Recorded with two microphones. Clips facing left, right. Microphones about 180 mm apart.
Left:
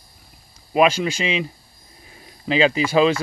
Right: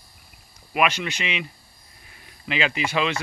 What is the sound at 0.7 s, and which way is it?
Speech, 30° left (ahead or behind).